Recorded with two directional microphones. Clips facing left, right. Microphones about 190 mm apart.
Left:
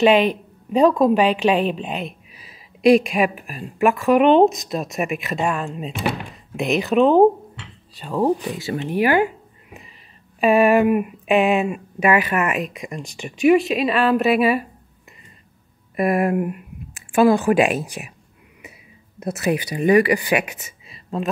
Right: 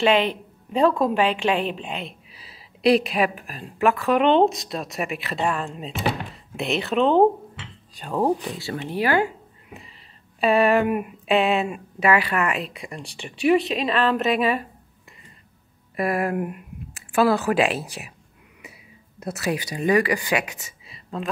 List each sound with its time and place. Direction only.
0.0 s a woman's voice: 15° left (ahead or behind)
6.8 s speech: 10° left (ahead or behind)
8.5 s a woman's voice: 20° left (ahead or behind)
10.4 s a woman's voice: 15° left (ahead or behind)
16.0 s a woman's voice: 20° left (ahead or behind)
19.1 s speech: 20° left (ahead or behind)